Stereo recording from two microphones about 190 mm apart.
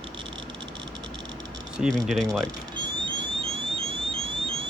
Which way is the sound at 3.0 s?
30° right (ahead or behind).